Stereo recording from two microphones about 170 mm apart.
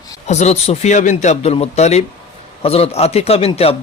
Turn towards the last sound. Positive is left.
turn(degrees=35)  # may be behind; listen again after turning